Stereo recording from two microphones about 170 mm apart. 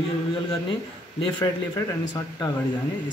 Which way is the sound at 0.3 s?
30° left (ahead or behind).